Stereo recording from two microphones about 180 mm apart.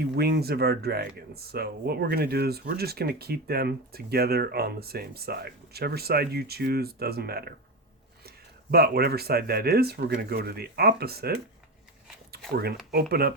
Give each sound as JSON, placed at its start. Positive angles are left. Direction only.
{"t": 0.0, "sound": "speech", "side_deg": -60}
{"t": 8.7, "sound": "speech", "side_deg": -60}
{"t": 12.9, "sound": "speech", "side_deg": -60}